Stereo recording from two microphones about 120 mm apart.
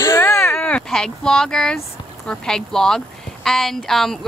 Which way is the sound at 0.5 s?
10° left (ahead or behind).